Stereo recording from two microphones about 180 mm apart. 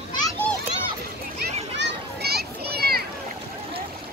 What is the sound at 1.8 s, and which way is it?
Children playing, 60° right (ahead or behind).